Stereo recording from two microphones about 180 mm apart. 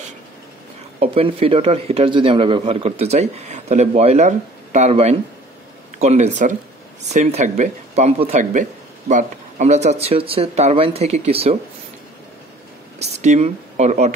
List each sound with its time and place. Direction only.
0.9 s a man's voice: 35° right (ahead or behind)
13.0 s speech: 40° right (ahead or behind)